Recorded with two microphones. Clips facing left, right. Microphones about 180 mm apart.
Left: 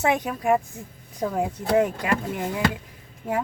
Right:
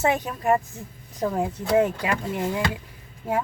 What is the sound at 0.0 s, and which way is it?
Speech, centre (ahead or behind).